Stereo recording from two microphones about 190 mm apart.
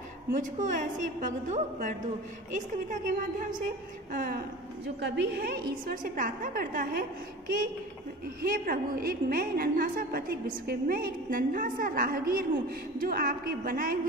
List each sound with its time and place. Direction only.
0.3 s a woman's voice: 45° right (ahead or behind)
5.0 s a woman's voice: 60° right (ahead or behind); by 7.1 s 45° right (ahead or behind)
8.4 s a woman's voice: 50° right (ahead or behind)